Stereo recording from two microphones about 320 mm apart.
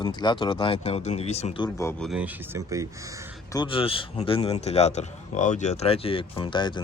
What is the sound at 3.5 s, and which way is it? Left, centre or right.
Speech, centre.